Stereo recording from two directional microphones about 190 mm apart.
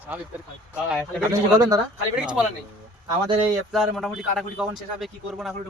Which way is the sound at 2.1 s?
5° right (ahead or behind).